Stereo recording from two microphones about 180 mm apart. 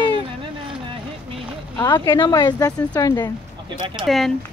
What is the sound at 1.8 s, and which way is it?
Speech, 25° left (ahead or behind).